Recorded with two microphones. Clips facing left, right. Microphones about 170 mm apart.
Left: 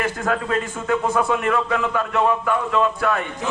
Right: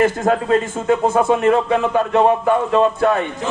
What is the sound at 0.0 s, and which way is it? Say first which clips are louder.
A man's voice: right 7 dB; 35° right (ahead or behind).